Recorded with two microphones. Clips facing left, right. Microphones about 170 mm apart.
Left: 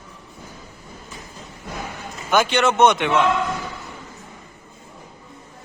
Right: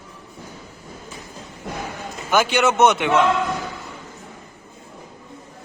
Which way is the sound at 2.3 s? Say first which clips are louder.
Even; 5° right (ahead or behind).